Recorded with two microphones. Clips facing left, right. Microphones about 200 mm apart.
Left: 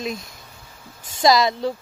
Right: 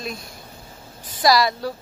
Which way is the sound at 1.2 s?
20° left (ahead or behind).